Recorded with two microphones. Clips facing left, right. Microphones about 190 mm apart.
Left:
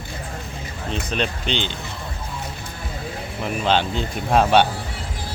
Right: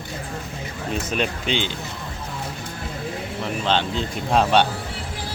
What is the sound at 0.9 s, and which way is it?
Speech, 5° right (ahead or behind).